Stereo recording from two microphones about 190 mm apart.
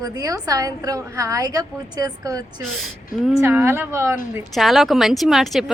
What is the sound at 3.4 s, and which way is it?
Speech, 15° right (ahead or behind).